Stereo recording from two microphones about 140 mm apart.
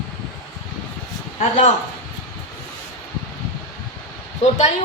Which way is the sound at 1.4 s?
55° left (ahead or behind).